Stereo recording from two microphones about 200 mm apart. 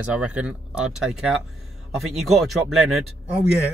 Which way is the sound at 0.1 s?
5° right (ahead or behind).